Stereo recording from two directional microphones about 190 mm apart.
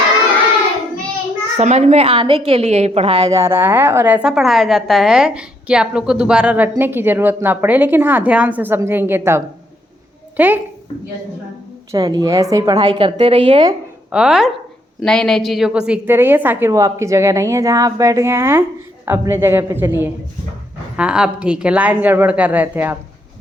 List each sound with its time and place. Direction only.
1.5 s a woman's voice: 35° right (ahead or behind)
3.2 s a woman's voice: 15° right (ahead or behind)
11.9 s a woman's voice: 20° right (ahead or behind)
14.1 s a woman's voice: 5° right (ahead or behind)